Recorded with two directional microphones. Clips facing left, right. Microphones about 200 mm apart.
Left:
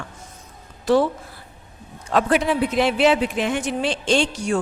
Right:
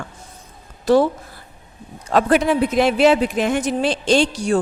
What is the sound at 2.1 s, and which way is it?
A woman's voice, 40° right (ahead or behind).